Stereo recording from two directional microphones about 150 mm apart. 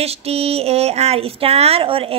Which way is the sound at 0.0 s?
40° right (ahead or behind).